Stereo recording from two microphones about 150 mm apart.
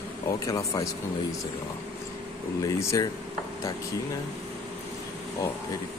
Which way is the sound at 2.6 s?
20° left (ahead or behind).